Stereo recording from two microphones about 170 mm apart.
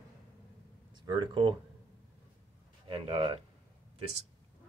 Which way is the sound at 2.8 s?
35° right (ahead or behind).